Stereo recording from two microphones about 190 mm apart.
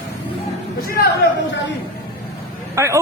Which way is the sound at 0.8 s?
50° left (ahead or behind).